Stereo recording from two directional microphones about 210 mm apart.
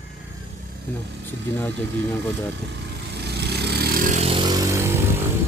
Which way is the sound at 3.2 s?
50° right (ahead or behind).